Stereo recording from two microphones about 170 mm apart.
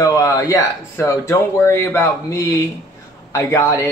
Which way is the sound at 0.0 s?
20° left (ahead or behind).